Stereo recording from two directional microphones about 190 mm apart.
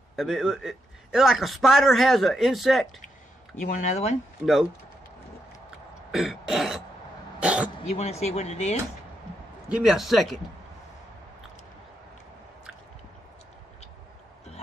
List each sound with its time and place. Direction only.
0.1 s a man's voice: centre (ahead or behind)
3.5 s speech: 40° left (ahead or behind)
4.4 s speech: 5° right (ahead or behind)
6.1 s a man's voice: centre (ahead or behind)
7.8 s speech: 35° left (ahead or behind)
9.7 s a man's voice: 5° right (ahead or behind)